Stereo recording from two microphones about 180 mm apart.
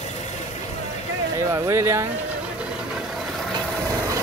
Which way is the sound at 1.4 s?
15° right (ahead or behind).